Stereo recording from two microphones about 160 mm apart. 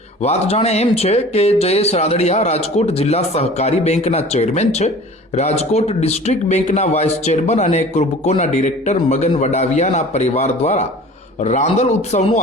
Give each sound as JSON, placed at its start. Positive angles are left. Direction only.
{"t": 0.2, "sound": "speech", "side_deg": 40}